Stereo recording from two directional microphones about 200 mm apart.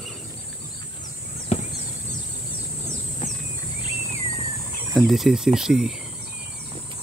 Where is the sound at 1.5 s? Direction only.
30° left (ahead or behind).